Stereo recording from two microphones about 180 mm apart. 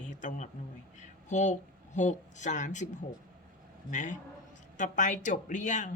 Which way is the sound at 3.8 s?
45° left (ahead or behind).